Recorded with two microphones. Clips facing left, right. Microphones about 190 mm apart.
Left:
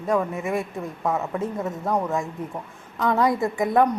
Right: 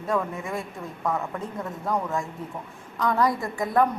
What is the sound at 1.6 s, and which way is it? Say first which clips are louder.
A woman's voice: even; 20° left (ahead or behind).